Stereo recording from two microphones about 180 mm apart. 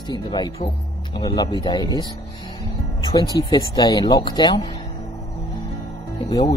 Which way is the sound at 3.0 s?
25° left (ahead or behind).